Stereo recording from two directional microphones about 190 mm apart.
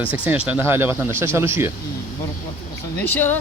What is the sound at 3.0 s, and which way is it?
Speech, 10° left (ahead or behind).